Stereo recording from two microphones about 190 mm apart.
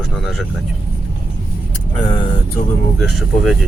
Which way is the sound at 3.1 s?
Centre (ahead or behind).